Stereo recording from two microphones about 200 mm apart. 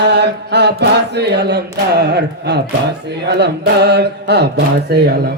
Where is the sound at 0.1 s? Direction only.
60° right (ahead or behind).